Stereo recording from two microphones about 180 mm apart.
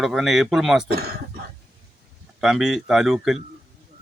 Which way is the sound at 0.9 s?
60° right (ahead or behind).